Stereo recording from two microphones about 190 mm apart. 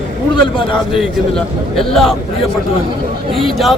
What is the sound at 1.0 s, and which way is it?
A man's voice, centre (ahead or behind).